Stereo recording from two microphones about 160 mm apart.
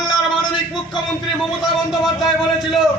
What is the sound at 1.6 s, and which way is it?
A man's voice, centre (ahead or behind).